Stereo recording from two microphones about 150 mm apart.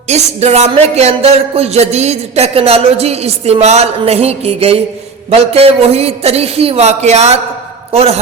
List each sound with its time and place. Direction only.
0.1 s speech: 45° right (ahead or behind)